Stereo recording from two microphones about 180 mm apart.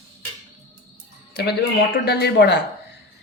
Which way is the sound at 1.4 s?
65° left (ahead or behind).